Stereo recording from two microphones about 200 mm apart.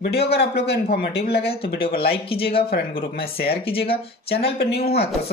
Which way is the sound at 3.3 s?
50° left (ahead or behind).